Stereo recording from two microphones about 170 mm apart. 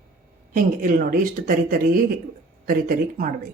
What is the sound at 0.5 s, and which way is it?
Speech, 50° right (ahead or behind).